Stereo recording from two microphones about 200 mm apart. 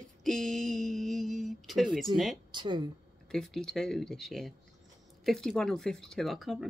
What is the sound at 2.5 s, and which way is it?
Speech, 25° right (ahead or behind).